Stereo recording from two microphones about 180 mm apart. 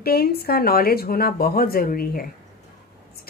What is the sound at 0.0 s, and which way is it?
Speech, 60° left (ahead or behind).